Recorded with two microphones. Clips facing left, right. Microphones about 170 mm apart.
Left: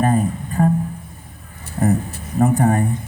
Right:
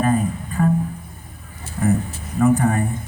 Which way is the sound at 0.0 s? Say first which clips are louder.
Left 1 dB; 40° left (ahead or behind).